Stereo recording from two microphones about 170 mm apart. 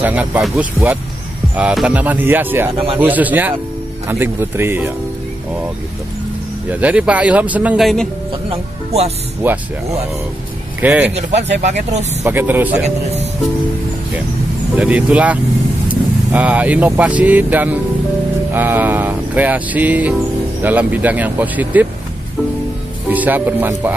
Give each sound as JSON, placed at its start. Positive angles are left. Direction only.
{"t": 0.0, "sound": "music", "side_deg": -10}
{"t": 6.7, "sound": "music", "side_deg": -10}
{"t": 8.5, "sound": "speech", "side_deg": -35}
{"t": 9.4, "sound": "music", "side_deg": -10}
{"t": 11.1, "sound": "speech", "side_deg": -40}
{"t": 12.2, "sound": "music", "side_deg": -10}
{"t": 12.8, "sound": "speech", "side_deg": -40}
{"t": 14.8, "sound": "music", "side_deg": -5}
{"t": 15.9, "sound": "speech", "side_deg": -10}
{"t": 18.5, "sound": "music", "side_deg": -10}
{"t": 23.0, "sound": "speech", "side_deg": -10}